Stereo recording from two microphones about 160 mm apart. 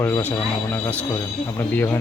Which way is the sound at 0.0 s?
15° left (ahead or behind).